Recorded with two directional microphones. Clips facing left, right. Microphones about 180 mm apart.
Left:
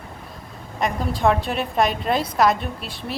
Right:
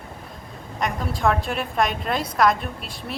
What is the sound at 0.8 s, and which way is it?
A woman's voice, centre (ahead or behind).